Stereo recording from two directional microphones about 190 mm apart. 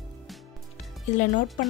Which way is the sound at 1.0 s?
40° left (ahead or behind).